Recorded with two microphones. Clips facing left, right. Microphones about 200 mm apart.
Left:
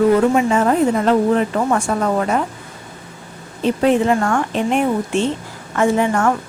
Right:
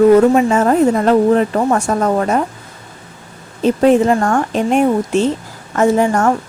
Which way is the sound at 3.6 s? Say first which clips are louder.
Right 4 dB; 40° right (ahead or behind).